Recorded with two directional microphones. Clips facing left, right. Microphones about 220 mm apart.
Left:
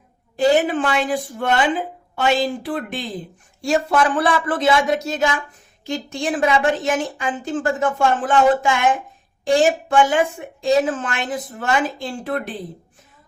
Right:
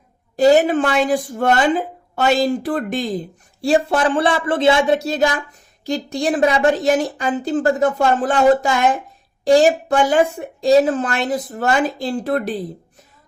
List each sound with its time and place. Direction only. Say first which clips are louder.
0.3 s a woman's voice: right 4 dB; 40° right (ahead or behind)
3.6 s a woman's voice: right 2 dB; 30° right (ahead or behind)